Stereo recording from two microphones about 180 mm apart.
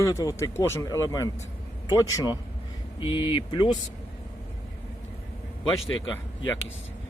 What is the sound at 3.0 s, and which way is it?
Speech, 30° left (ahead or behind).